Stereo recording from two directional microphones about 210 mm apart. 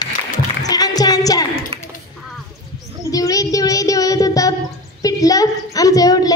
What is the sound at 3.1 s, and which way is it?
Child singing, 15° left (ahead or behind).